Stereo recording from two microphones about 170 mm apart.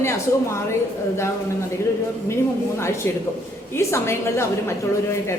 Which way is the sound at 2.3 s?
15° left (ahead or behind).